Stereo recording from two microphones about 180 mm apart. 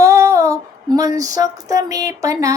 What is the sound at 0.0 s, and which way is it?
Child singing, 15° right (ahead or behind).